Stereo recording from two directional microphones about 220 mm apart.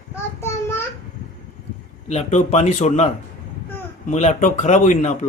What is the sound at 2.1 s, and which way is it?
A man's voice, 30° left (ahead or behind).